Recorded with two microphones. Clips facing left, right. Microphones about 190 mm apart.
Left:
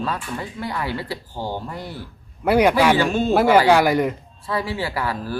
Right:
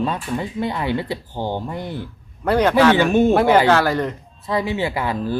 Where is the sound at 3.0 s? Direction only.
20° right (ahead or behind).